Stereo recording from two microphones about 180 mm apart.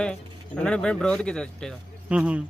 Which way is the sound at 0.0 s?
5° left (ahead or behind).